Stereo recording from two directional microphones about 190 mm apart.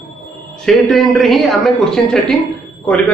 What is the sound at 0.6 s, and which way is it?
A man's voice, centre (ahead or behind).